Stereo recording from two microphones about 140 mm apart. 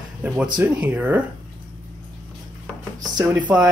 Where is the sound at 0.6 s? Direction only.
10° right (ahead or behind).